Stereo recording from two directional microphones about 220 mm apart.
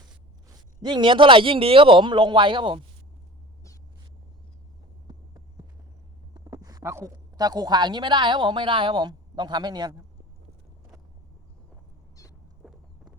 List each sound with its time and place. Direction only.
0.4 s a man's voice: 20° right (ahead or behind)
6.3 s speech: 15° right (ahead or behind)
12.6 s a sound: centre (ahead or behind)